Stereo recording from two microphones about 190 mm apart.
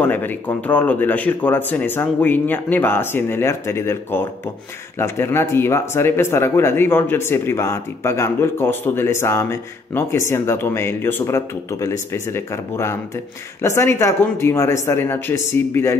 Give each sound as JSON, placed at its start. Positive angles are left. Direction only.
{"t": 0.0, "sound": "speech", "side_deg": 10}